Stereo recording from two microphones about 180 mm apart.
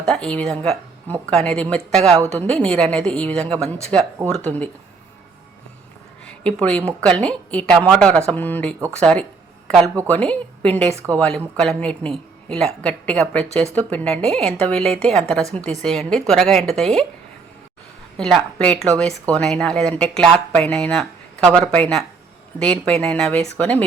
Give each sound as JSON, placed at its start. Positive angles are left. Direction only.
{"t": 0.0, "sound": "a woman's voice", "side_deg": 5}
{"t": 6.4, "sound": "a woman's voice", "side_deg": 5}
{"t": 10.9, "sound": "a woman's voice", "side_deg": -15}
{"t": 11.2, "sound": "speech", "side_deg": 5}
{"t": 18.2, "sound": "speech", "side_deg": 0}